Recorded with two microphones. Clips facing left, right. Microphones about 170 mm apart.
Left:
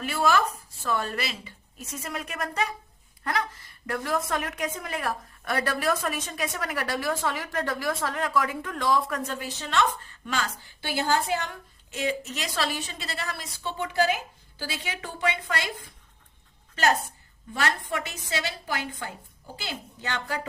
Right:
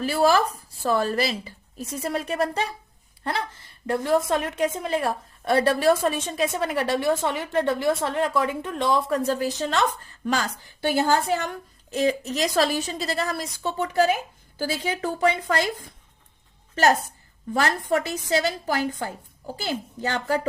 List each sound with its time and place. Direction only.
0.0 s a woman's voice: 35° right (ahead or behind)
10.9 s a woman's voice: 45° right (ahead or behind)
17.8 s a woman's voice: 40° right (ahead or behind)